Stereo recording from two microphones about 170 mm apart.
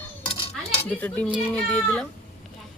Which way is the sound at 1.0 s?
10° left (ahead or behind).